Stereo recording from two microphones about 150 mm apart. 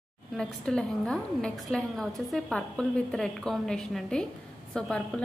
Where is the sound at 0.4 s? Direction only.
5° left (ahead or behind).